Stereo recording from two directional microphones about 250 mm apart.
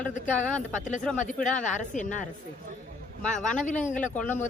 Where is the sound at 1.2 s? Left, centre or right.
Left.